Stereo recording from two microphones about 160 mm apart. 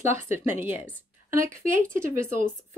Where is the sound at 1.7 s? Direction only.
55° right (ahead or behind).